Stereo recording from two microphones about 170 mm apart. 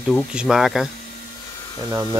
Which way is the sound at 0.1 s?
5° right (ahead or behind).